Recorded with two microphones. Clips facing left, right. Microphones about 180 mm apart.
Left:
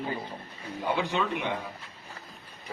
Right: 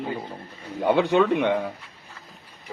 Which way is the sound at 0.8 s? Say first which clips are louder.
Right 9 dB; 65° right (ahead or behind).